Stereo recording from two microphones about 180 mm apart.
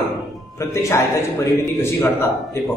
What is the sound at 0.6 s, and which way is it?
A man's voice, 15° left (ahead or behind).